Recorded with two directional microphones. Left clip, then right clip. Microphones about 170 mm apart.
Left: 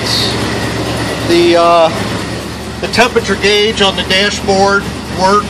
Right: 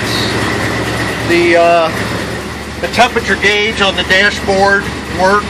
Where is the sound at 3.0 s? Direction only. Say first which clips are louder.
Even; 10° left (ahead or behind).